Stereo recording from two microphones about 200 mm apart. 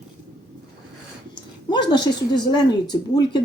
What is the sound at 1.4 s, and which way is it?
Speech, 20° left (ahead or behind).